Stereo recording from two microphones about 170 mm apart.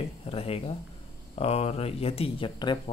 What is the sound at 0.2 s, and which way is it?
Speech, 35° left (ahead or behind).